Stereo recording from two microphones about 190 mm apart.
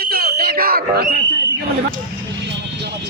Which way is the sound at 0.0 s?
55° right (ahead or behind).